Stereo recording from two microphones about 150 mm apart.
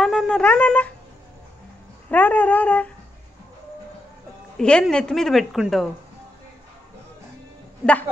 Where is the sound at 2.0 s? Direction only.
10° left (ahead or behind).